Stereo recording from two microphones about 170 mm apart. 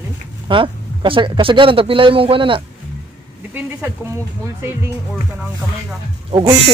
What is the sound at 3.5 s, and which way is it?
Speech, 10° right (ahead or behind).